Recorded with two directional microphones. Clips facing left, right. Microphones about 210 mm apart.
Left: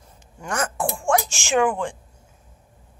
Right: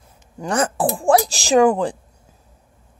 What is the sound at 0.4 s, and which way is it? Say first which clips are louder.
Speech: right 6 dB; 35° right (ahead or behind).